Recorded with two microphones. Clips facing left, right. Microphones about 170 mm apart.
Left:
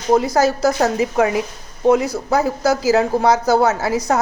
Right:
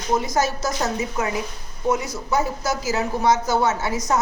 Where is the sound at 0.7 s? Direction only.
65° left (ahead or behind); by 1.4 s 80° left.